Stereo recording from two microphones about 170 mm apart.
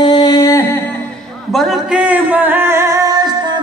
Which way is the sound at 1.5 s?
Centre (ahead or behind).